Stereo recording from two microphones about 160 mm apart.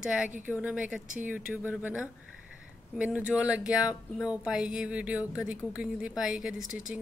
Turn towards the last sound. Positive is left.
turn(degrees=-5)  # may be behind; listen again after turning